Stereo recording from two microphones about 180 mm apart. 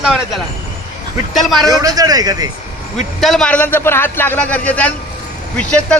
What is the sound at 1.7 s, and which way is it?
Speech, 20° right (ahead or behind).